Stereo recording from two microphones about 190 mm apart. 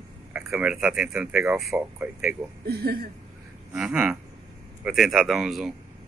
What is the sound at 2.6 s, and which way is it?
Speech, 55° right (ahead or behind).